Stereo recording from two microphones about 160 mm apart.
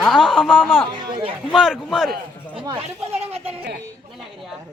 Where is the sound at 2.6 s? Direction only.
35° right (ahead or behind).